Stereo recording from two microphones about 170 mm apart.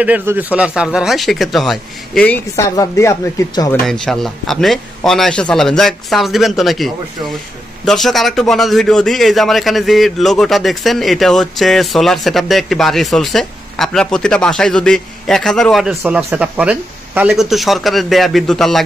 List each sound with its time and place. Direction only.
0.0 s a man's voice: 10° right (ahead or behind); by 3.7 s 20° left (ahead or behind)
3.8 s a man's voice: centre (ahead or behind)
16.0 s a man's voice: 10° right (ahead or behind)